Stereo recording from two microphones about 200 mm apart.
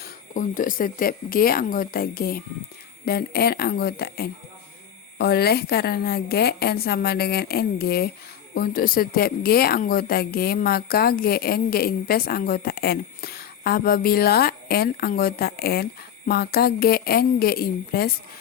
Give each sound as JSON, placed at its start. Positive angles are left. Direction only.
{"t": 0.3, "sound": "speech", "side_deg": 40}